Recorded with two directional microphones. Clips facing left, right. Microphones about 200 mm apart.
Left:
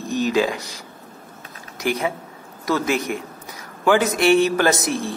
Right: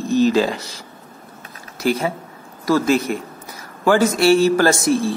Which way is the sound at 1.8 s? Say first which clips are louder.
Right 3 dB; 15° left (ahead or behind).